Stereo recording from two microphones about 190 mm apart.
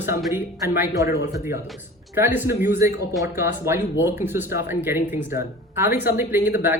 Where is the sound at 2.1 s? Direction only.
10° right (ahead or behind).